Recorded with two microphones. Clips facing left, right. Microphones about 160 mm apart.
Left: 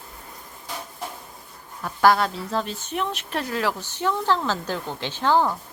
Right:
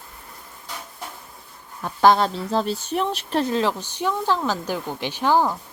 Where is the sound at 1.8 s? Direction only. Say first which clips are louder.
Right 2 dB; 20° right (ahead or behind).